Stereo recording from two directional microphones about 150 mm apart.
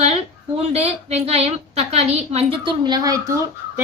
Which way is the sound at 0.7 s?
45° right (ahead or behind).